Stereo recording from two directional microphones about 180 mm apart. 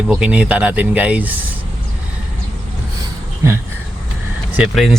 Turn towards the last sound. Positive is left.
turn(degrees=0)  # may be behind; listen again after turning